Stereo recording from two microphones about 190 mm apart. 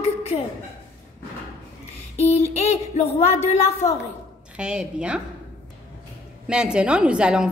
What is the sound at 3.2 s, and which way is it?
Child singing, 35° left (ahead or behind).